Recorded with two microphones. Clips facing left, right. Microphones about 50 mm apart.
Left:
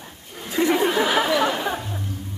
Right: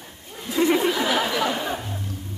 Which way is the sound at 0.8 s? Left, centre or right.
Left.